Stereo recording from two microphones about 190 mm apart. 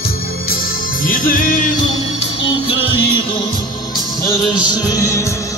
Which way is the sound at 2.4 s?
30° left (ahead or behind).